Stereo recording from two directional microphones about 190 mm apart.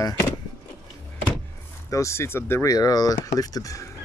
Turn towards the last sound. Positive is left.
turn(degrees=15)  # may be behind; listen again after turning